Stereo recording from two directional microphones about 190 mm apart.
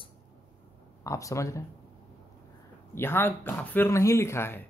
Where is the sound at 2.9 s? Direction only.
10° left (ahead or behind).